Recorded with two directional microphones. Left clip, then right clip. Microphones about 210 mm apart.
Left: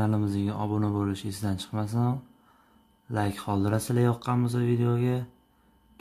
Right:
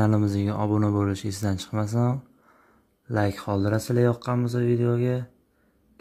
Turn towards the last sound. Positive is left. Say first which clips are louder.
# right 3 dB
turn(degrees=-10)  # may be behind; listen again after turning